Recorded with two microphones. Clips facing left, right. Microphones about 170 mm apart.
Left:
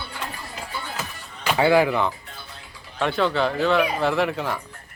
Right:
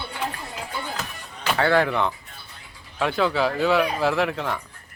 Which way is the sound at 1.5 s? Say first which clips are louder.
Left 2 dB; 10° left (ahead or behind).